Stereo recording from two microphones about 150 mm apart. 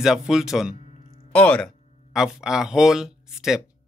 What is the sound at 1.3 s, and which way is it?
Speech, 10° left (ahead or behind).